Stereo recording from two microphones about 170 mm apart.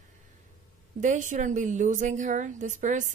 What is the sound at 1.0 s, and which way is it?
Speech, 50° right (ahead or behind).